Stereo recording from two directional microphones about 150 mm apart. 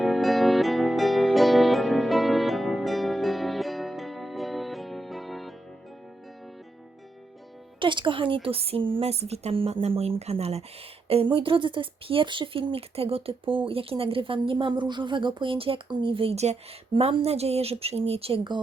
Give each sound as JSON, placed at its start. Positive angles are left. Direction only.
{"t": 0.0, "sound": "music", "side_deg": 0}
{"t": 7.8, "sound": "speech", "side_deg": -35}